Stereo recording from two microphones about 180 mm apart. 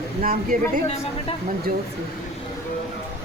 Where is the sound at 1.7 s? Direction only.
55° right (ahead or behind).